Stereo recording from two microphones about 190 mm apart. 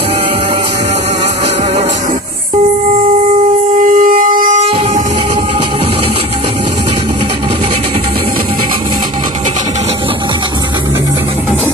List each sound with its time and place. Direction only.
3.8 s shofar: 45° right (ahead or behind)